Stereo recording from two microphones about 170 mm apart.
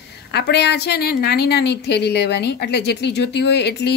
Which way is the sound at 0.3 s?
80° left.